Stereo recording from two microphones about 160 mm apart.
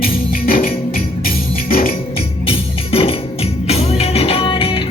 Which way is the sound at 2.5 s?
35° left (ahead or behind).